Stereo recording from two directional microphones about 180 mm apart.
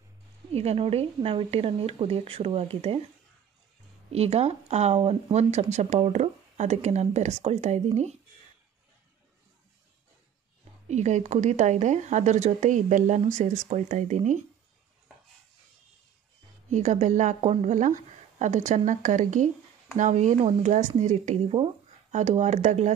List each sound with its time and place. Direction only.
0.5 s speech: 35° right (ahead or behind)
4.1 s speech: 35° right (ahead or behind)
10.9 s speech: 40° right (ahead or behind)
16.7 s speech: 40° right (ahead or behind)